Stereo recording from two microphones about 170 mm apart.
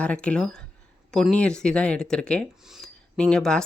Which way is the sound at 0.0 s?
5° left (ahead or behind).